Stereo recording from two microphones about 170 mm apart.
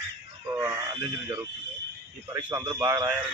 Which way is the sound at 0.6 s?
15° right (ahead or behind).